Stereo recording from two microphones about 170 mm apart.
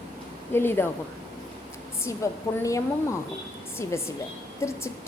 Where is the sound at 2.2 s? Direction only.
15° left (ahead or behind).